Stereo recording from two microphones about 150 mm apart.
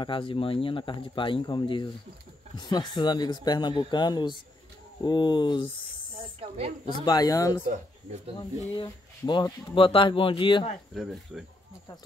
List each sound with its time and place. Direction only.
0.0 s speech: 35° left (ahead or behind)
7.1 s speech: 25° left (ahead or behind)
9.7 s speech: 35° left (ahead or behind)
11.0 s speech: centre (ahead or behind)